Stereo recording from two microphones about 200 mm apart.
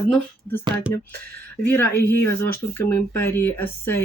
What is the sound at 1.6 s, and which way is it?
Speech, 10° left (ahead or behind).